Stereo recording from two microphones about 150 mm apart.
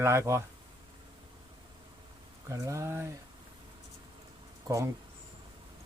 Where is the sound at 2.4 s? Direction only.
20° right (ahead or behind).